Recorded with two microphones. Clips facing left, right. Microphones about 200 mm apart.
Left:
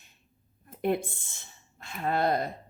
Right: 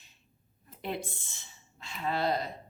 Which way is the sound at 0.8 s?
50° left (ahead or behind).